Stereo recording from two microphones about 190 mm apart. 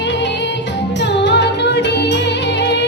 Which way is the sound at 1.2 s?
65° left (ahead or behind).